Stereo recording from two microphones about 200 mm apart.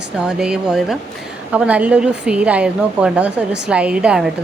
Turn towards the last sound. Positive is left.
turn(degrees=-5)  # may be behind; listen again after turning